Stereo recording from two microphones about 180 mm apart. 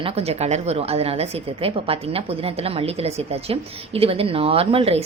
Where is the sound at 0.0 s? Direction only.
35° right (ahead or behind).